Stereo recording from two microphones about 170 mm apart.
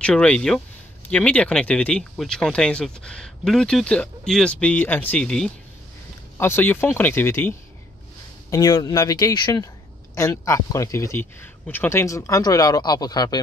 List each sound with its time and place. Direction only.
0.0 s speech: 5° left (ahead or behind); by 13.4 s 25° left (ahead or behind)